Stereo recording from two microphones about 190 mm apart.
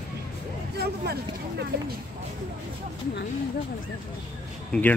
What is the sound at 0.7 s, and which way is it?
Vehicle, 60° right (ahead or behind).